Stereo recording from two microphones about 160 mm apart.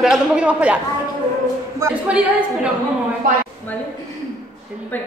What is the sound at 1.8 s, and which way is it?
Speech, 10° right (ahead or behind).